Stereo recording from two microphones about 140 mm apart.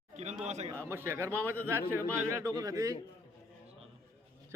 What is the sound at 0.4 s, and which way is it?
Speech, 55° right (ahead or behind).